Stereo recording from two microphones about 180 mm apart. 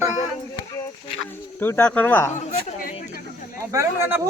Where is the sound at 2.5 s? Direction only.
40° left (ahead or behind).